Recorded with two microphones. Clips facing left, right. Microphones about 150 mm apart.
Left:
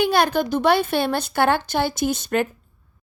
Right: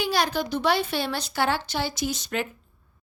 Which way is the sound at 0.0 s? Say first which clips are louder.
Left 6 dB; 55° left (ahead or behind).